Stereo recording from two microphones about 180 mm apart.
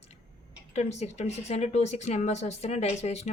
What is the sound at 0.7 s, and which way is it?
A woman's voice, 40° left (ahead or behind).